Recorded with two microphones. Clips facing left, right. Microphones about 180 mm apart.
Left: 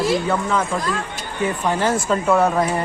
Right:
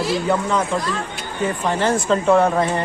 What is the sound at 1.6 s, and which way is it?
Speech, 10° left (ahead or behind).